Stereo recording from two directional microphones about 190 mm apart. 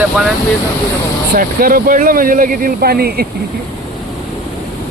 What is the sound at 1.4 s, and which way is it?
Speech, 50° right (ahead or behind).